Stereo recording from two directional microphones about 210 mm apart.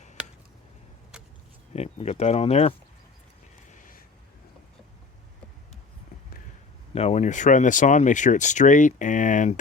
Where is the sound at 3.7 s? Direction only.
40° left (ahead or behind).